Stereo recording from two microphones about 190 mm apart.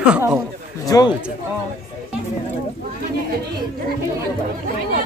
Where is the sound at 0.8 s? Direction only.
20° left (ahead or behind).